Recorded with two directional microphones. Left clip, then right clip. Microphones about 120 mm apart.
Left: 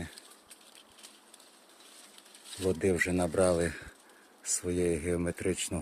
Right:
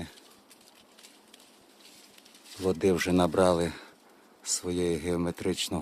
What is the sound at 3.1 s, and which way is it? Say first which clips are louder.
Speech: right 4 dB; 50° right (ahead or behind).